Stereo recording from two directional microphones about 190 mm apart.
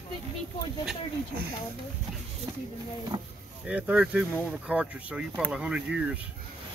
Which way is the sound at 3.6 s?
5° right (ahead or behind).